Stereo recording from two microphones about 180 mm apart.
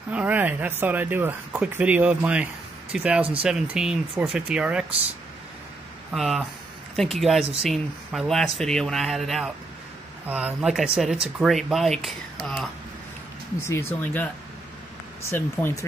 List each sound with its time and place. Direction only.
0.1 s speech: 10° right (ahead or behind)
6.1 s speech: centre (ahead or behind)
13.6 s speech: 15° left (ahead or behind)